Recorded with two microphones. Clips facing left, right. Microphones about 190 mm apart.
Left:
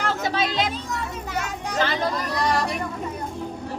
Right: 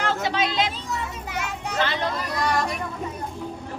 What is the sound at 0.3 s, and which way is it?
A child's voice, 40° left (ahead or behind).